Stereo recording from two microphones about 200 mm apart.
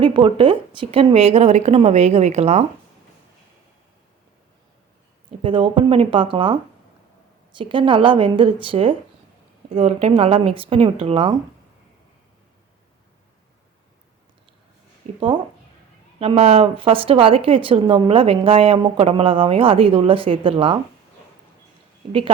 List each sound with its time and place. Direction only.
0.0 s a woman's voice: 25° right (ahead or behind)
5.4 s speech: 25° right (ahead or behind)
15.1 s speech: 30° right (ahead or behind)